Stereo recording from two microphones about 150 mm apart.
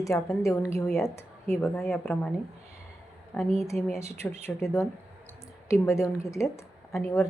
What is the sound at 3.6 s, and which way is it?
A woman's voice, 20° left (ahead or behind).